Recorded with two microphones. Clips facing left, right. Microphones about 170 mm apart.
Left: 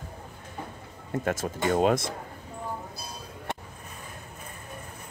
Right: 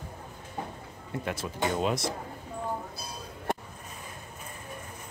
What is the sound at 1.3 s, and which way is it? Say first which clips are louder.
Speech: left 4 dB; 45° left (ahead or behind).